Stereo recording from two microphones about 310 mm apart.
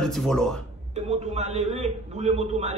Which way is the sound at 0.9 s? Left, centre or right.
Right.